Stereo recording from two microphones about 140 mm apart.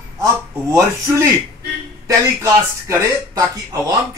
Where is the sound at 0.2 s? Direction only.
20° right (ahead or behind).